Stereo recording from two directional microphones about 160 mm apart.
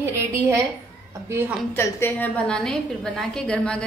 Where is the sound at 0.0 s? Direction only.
15° right (ahead or behind).